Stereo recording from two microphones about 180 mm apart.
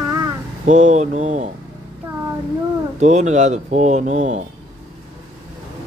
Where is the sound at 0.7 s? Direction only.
40° right (ahead or behind).